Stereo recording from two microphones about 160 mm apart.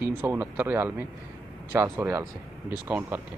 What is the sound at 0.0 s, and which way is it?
Speech, 15° right (ahead or behind).